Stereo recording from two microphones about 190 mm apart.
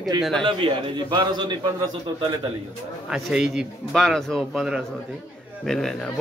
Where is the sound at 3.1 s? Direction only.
5° right (ahead or behind).